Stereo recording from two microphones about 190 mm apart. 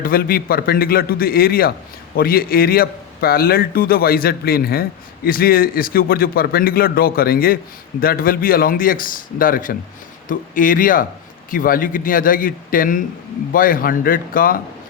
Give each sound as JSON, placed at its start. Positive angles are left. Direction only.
{"t": 0.0, "sound": "a man's voice", "side_deg": 50}